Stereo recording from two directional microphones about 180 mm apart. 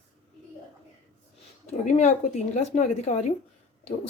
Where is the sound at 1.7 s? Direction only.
40° left (ahead or behind).